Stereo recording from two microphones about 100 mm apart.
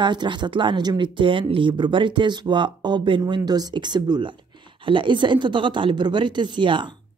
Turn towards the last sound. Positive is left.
turn(degrees=-50)  # may be behind; listen again after turning